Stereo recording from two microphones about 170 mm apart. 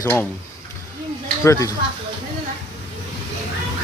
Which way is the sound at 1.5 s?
20° left (ahead or behind).